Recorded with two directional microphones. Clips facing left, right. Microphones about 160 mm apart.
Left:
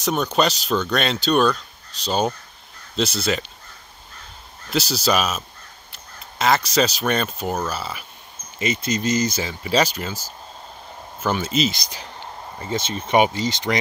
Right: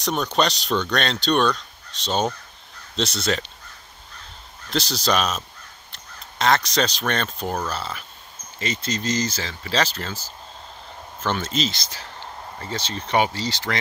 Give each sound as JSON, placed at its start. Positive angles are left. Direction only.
{"t": 0.0, "sound": "speech", "side_deg": 5}
{"t": 4.6, "sound": "speech", "side_deg": 5}